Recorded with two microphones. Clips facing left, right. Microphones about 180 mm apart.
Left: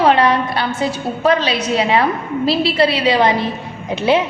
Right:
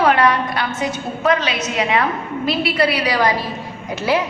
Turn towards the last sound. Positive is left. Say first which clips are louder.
# left 4 dB
turn(degrees=25)  # may be behind; listen again after turning